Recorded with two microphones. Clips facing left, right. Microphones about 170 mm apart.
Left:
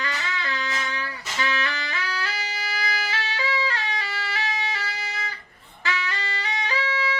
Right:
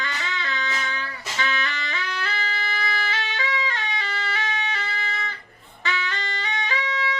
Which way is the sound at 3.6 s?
5° left (ahead or behind).